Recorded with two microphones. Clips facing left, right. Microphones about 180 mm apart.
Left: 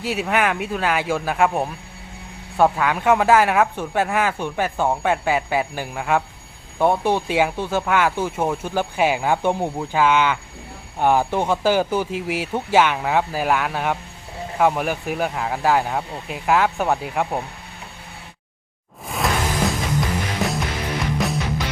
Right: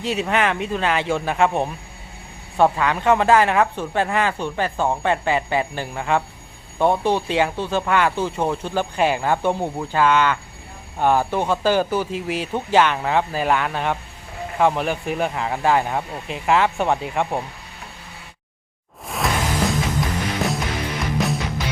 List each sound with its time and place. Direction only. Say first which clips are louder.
0.0 s speech: even; 5° left (ahead or behind)
19.0 s music: even; centre (ahead or behind)